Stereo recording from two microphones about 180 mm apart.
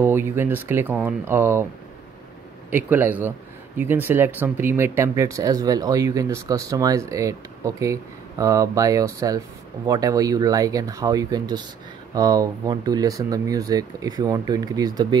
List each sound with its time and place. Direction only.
0.0 s speech: 15° right (ahead or behind)
2.7 s speech: 10° right (ahead or behind)